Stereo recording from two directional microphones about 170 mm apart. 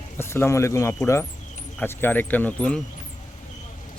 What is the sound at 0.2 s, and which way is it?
Speech, 15° left (ahead or behind).